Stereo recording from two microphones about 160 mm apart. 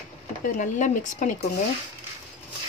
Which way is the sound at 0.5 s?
50° left (ahead or behind).